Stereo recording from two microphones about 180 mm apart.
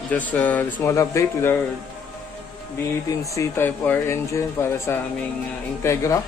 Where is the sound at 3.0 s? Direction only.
15° left (ahead or behind).